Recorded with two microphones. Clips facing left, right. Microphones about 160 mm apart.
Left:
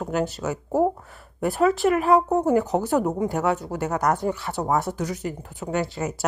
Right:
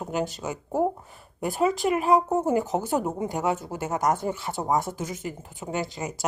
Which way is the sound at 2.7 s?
5° right (ahead or behind).